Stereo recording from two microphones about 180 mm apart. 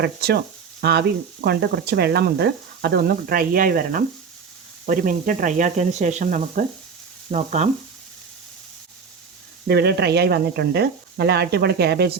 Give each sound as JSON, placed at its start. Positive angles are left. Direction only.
{"t": 0.0, "sound": "speech", "side_deg": -60}
{"t": 0.8, "sound": "frying", "side_deg": -65}
{"t": 1.5, "sound": "speech", "side_deg": -65}
{"t": 7.3, "sound": "frying", "side_deg": -40}
{"t": 9.6, "sound": "speech", "side_deg": -65}